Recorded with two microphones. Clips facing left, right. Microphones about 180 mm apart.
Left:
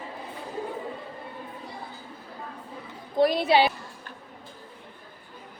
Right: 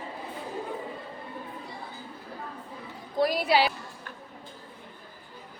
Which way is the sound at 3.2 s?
25° left (ahead or behind).